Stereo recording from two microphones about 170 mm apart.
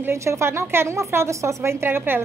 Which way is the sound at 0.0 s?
15° right (ahead or behind).